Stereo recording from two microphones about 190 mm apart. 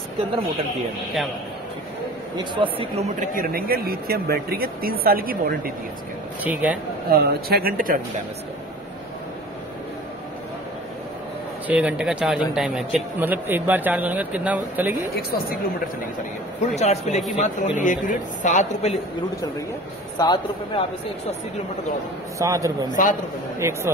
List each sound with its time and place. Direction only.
2.3 s speech: 25° right (ahead or behind)
3.2 s speech: 50° right (ahead or behind)
6.4 s a man's voice: 10° right (ahead or behind)
7.1 s speech: 55° right (ahead or behind)
11.6 s a man's voice: 5° right (ahead or behind)
16.7 s a woman's voice: 35° left (ahead or behind)
20.2 s speech: 20° left (ahead or behind)
22.4 s a man's voice: 20° right (ahead or behind)
22.8 s a man's voice: 40° left (ahead or behind)
23.6 s a man's voice: 15° right (ahead or behind)